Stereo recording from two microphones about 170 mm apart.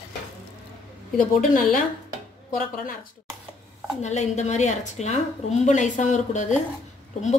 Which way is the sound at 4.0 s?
45° left (ahead or behind).